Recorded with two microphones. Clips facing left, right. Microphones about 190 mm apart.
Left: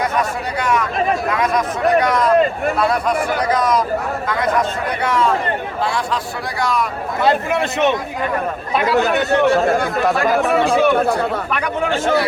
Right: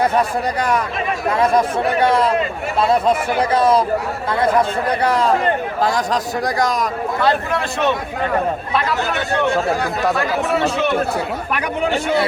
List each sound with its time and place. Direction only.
0.0 s speech: 30° right (ahead or behind)
7.2 s a man's voice: 20° left (ahead or behind)
10.0 s speech: centre (ahead or behind)
10.3 s speech: 60° left (ahead or behind)